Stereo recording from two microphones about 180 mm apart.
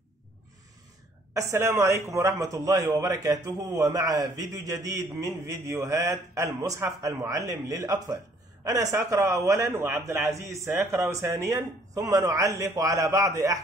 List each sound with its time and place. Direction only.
1.3 s a man's voice: 15° right (ahead or behind)